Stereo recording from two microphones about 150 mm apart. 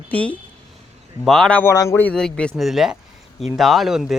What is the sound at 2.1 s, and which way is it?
Speech, 5° left (ahead or behind).